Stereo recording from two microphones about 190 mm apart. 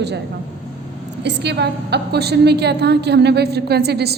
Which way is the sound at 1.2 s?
65° right (ahead or behind).